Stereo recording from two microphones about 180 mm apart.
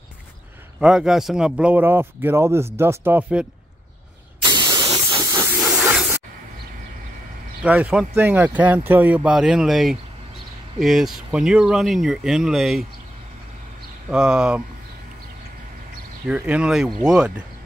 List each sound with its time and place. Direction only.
0.7 s speech: 5° right (ahead or behind)
4.4 s hiss: 25° right (ahead or behind)
7.6 s speech: 5° right (ahead or behind)
14.1 s speech: 5° right (ahead or behind)
16.3 s speech: 5° right (ahead or behind)